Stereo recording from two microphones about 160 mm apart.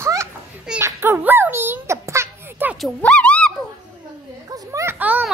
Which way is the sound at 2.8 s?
5° left (ahead or behind).